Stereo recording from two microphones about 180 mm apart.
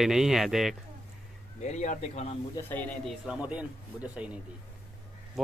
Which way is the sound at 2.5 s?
10° left (ahead or behind).